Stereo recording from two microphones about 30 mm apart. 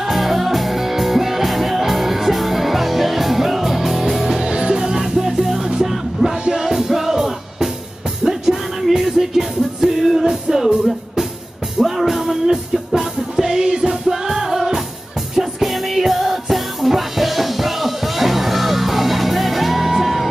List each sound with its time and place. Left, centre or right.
0.0 s music: centre
4.2 s music: centre
4.5 s music: right
4.8 s music: centre
6.6 s music: centre
11.8 s music: centre